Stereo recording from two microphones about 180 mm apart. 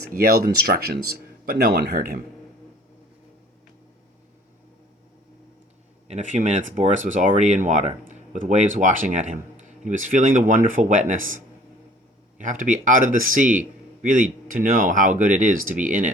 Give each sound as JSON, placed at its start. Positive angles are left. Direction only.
{"t": 0.1, "sound": "speech", "side_deg": -55}
{"t": 6.1, "sound": "a man's voice", "side_deg": -40}
{"t": 12.4, "sound": "a man's voice", "side_deg": -45}